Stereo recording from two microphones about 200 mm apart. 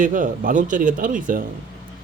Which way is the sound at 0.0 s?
40° right (ahead or behind).